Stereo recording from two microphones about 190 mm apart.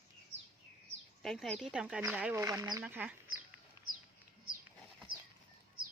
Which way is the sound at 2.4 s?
20° right (ahead or behind).